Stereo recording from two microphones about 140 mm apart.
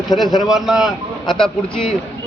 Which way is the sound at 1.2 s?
35° left (ahead or behind).